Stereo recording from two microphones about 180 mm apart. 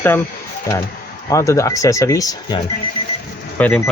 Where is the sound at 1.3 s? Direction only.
15° left (ahead or behind).